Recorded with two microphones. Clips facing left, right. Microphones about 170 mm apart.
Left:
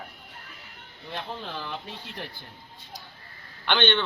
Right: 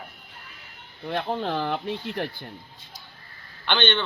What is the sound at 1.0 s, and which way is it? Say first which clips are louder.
Speech: right 9 dB; 60° right (ahead or behind).